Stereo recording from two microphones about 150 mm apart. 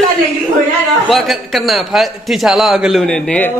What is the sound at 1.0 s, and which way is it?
A man's voice, centre (ahead or behind).